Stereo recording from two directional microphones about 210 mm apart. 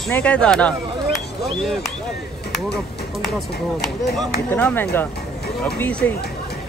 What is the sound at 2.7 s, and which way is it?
Speech, centre (ahead or behind).